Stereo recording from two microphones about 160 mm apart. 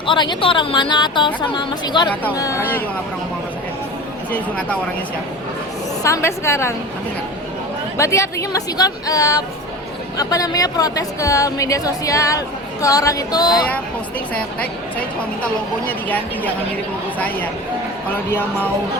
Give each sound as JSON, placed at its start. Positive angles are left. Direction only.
{"t": 0.0, "sound": "a woman's voice", "side_deg": 30}
{"t": 4.3, "sound": "a woman's voice", "side_deg": 5}
{"t": 6.0, "sound": "a woman's voice", "side_deg": 15}
{"t": 7.9, "sound": "a woman's voice", "side_deg": 20}
{"t": 14.3, "sound": "a woman's voice", "side_deg": 10}